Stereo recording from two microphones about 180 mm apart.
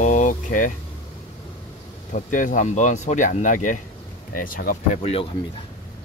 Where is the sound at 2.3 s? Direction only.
45° left (ahead or behind).